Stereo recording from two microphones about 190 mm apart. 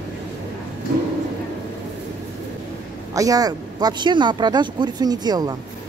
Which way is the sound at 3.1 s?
20° right (ahead or behind).